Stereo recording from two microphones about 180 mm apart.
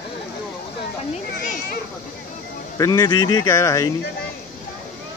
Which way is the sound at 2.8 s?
20° left (ahead or behind).